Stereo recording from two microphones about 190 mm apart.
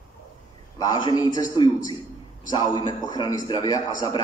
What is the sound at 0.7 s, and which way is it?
A man's voice, 20° left (ahead or behind).